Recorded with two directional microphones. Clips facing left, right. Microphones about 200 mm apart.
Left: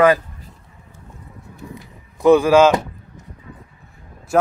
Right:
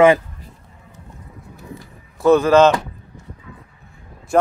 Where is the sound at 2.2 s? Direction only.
15° left (ahead or behind).